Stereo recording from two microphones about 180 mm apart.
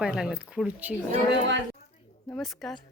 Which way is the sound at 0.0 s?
5° right (ahead or behind).